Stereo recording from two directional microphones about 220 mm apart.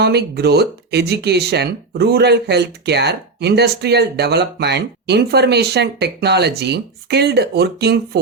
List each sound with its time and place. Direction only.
0.0 s speech: 45° right (ahead or behind)